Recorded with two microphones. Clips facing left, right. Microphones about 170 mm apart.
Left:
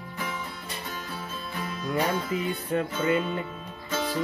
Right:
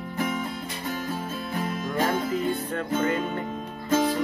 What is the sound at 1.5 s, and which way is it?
Music, 45° right (ahead or behind).